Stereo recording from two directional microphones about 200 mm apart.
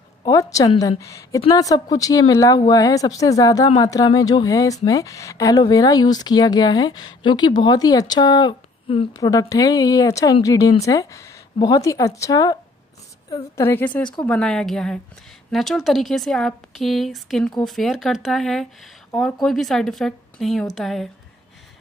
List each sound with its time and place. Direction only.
0.2 s a woman's voice: 15° left (ahead or behind); by 21.1 s centre (ahead or behind)